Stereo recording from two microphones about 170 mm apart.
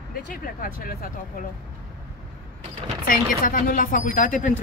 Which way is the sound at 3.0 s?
55° left (ahead or behind).